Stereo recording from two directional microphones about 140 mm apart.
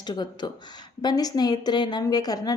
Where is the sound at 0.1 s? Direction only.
30° left (ahead or behind).